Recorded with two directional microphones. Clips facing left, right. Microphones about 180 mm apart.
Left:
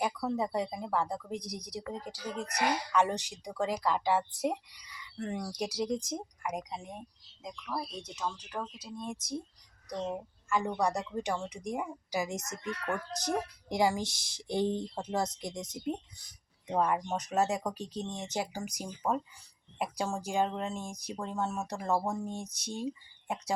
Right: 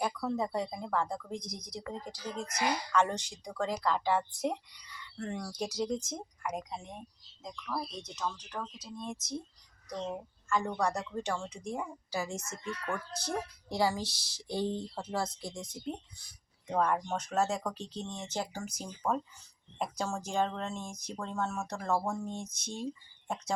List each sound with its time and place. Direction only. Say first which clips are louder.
0.0 s speech: left 1 dB; 15° left (ahead or behind)
12.8 s speech: left 4 dB; 5° left (ahead or behind)
13.7 s speech: left 2 dB; 20° left (ahead or behind)